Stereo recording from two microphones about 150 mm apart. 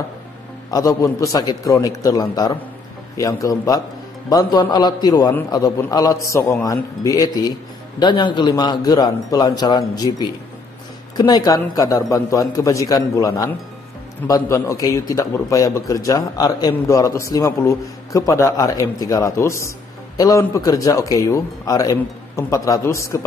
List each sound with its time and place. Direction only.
0.7 s a man's voice: 25° left (ahead or behind)